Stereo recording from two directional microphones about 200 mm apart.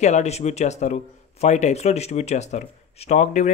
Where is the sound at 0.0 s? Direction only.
35° left (ahead or behind).